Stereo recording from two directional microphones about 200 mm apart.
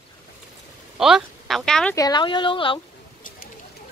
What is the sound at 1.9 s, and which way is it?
Speech, 20° left (ahead or behind).